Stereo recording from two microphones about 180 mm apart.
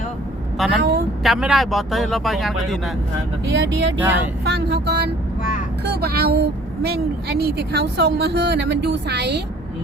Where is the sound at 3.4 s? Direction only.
75° right (ahead or behind).